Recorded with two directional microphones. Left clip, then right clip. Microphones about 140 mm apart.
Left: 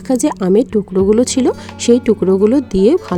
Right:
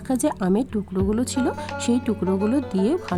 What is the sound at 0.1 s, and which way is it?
Speech, 35° left (ahead or behind).